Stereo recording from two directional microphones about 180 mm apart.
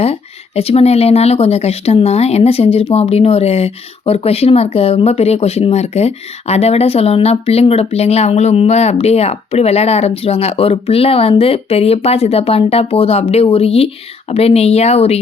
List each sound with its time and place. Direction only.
0.0 s speech: 35° left (ahead or behind)